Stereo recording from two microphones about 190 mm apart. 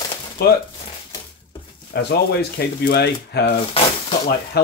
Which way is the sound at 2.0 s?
60° left (ahead or behind).